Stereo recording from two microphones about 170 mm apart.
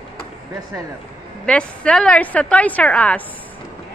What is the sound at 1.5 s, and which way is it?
A woman's voice, 5° left (ahead or behind).